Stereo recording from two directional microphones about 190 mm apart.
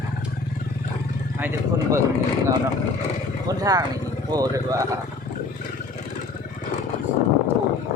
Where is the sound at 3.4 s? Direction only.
20° right (ahead or behind).